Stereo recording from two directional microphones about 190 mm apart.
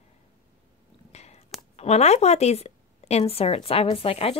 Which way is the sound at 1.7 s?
35° left (ahead or behind).